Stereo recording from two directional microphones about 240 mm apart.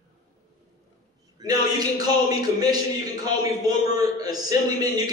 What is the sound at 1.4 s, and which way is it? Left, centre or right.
A man's voice, centre.